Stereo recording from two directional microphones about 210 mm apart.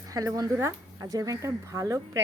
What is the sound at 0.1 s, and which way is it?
Speech, 15° right (ahead or behind).